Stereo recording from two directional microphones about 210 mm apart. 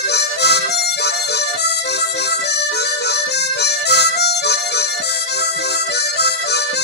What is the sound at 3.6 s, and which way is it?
Harmonica, 50° left (ahead or behind).